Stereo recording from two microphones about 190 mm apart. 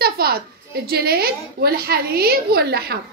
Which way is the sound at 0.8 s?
55° right (ahead or behind).